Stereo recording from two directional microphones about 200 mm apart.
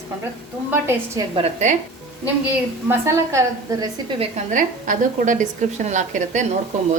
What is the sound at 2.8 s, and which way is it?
A woman's voice, 15° right (ahead or behind).